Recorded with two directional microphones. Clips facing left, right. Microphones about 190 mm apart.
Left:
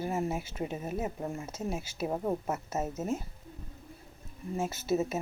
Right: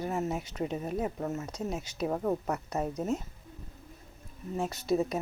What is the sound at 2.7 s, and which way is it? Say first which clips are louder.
Speech: right 2 dB; 5° left (ahead or behind).